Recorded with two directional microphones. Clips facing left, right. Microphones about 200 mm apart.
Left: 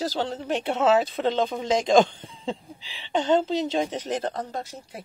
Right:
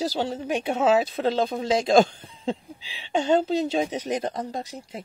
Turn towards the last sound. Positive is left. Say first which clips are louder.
# right 1 dB
turn(degrees=-15)  # may be behind; listen again after turning